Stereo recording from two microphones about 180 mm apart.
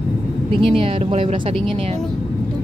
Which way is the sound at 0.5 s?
30° right (ahead or behind).